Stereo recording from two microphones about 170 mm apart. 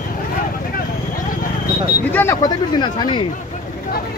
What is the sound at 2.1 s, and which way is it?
Speech, 15° left (ahead or behind).